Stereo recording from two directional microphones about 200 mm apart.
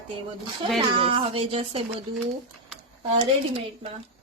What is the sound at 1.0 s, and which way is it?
Speech, 25° right (ahead or behind).